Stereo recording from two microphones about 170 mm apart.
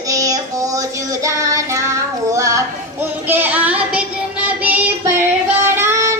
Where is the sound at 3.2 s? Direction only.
10° right (ahead or behind).